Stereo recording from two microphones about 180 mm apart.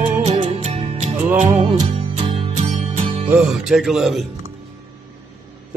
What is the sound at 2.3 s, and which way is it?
Music, 35° right (ahead or behind).